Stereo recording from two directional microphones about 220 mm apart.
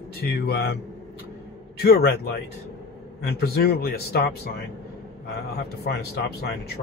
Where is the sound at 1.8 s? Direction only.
45° left (ahead or behind).